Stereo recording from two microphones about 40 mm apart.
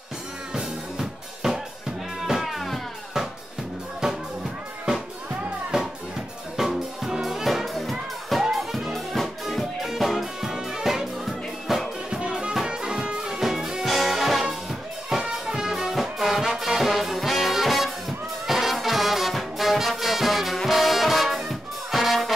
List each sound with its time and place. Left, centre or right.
0.5 s drum kit: centre
2.2 s music: centre
4.0 s music: centre
6.5 s music: centre
7.6 s music: centre
9.8 s music: centre
10.5 s music: centre
12.1 s music: right
12.6 s brass instrument: right
13.8 s music: centre
18.5 s brass instrument: centre